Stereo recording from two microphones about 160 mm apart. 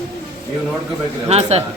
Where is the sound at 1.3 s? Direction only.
40° right (ahead or behind).